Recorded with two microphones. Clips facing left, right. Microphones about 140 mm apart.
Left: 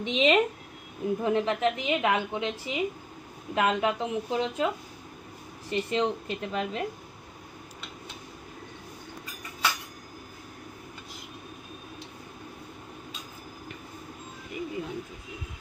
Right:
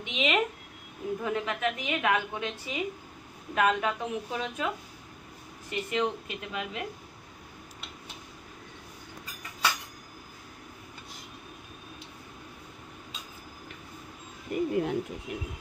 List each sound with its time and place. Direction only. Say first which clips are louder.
0.0 s a woman's voice: left 5 dB; 35° left (ahead or behind)
5.7 s speech: left 3 dB; 30° left (ahead or behind)
14.5 s speech: right 7 dB; 60° right (ahead or behind)